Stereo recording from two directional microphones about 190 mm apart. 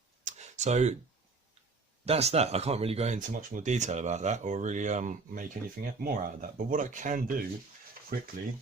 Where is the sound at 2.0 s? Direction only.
35° right (ahead or behind).